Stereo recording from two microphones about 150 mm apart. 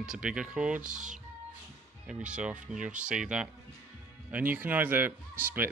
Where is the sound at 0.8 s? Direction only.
60° right (ahead or behind).